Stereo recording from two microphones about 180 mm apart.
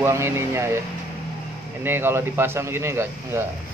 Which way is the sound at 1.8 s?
15° right (ahead or behind).